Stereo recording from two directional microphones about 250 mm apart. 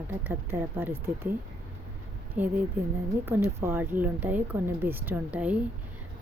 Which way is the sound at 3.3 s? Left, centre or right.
Centre.